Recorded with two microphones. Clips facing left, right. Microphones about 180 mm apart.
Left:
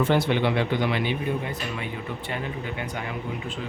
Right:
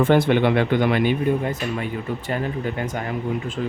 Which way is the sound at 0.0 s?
55° right (ahead or behind).